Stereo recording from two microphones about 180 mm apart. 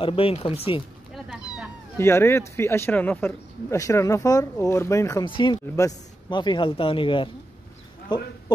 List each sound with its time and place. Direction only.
0.0 s speech: 30° left (ahead or behind)
2.0 s speech: 15° left (ahead or behind)